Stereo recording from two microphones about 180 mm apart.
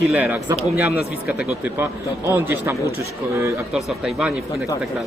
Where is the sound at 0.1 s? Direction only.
10° right (ahead or behind).